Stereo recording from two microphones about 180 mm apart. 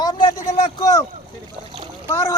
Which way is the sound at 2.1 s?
15° left (ahead or behind).